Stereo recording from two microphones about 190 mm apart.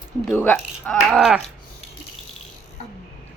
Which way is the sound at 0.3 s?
5° left (ahead or behind).